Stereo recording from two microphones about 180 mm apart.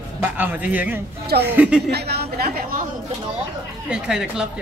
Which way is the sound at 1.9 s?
65° right (ahead or behind).